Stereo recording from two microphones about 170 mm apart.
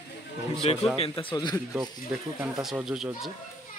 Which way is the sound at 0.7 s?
35° left (ahead or behind).